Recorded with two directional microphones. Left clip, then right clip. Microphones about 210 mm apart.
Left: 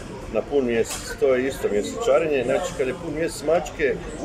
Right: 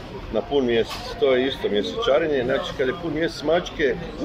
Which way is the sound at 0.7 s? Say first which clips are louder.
Right 1 dB; centre (ahead or behind).